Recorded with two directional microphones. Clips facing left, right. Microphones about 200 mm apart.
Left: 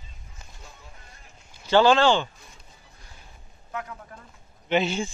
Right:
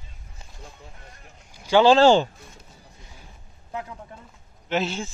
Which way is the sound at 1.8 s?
35° right (ahead or behind).